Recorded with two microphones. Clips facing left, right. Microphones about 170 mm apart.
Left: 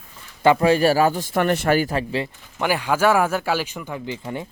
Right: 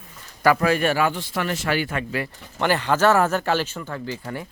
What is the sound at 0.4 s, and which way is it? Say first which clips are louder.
Speech: left 3 dB; 25° left (ahead or behind).